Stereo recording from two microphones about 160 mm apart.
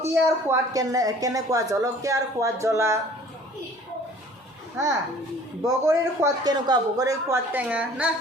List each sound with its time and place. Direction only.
0.1 s a woman's voice: 15° right (ahead or behind)
5.6 s a woman's voice: 20° right (ahead or behind)
7.5 s a woman's voice: 10° right (ahead or behind)